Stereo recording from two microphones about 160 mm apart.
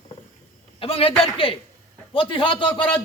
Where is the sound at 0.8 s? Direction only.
35° left (ahead or behind).